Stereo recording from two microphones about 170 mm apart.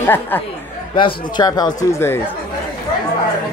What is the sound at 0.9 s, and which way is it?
Speech, 25° left (ahead or behind).